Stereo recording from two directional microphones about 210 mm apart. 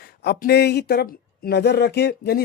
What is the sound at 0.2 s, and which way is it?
Speech, 50° left (ahead or behind).